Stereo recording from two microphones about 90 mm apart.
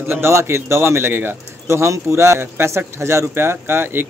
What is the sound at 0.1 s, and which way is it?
Speech, 30° right (ahead or behind).